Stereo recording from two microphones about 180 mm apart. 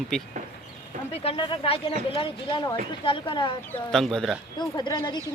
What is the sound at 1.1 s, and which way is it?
A woman's voice, 30° left (ahead or behind).